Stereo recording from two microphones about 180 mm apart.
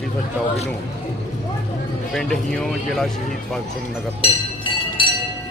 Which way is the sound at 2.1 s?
5° left (ahead or behind).